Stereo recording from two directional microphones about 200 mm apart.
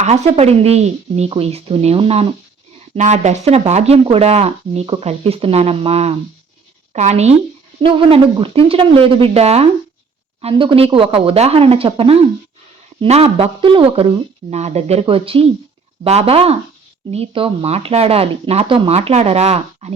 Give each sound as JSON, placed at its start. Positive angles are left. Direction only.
{"t": 0.0, "sound": "speech", "side_deg": -35}